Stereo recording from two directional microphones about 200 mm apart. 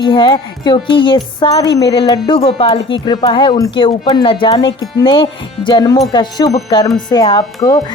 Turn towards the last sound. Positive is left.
turn(degrees=20)  # may be behind; listen again after turning